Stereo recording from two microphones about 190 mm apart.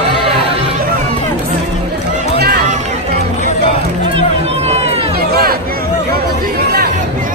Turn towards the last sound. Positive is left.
turn(degrees=-55)  # may be behind; listen again after turning